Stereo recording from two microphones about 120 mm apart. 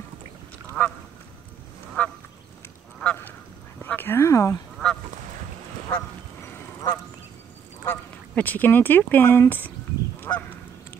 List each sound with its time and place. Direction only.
0.8 s duck: 15° left (ahead or behind)
2.0 s goose: 15° left (ahead or behind)
3.8 s a sound: 15° left (ahead or behind)
5.9 s goose: 20° left (ahead or behind)
7.8 s speech: 15° left (ahead or behind)
10.3 s goose: 20° left (ahead or behind)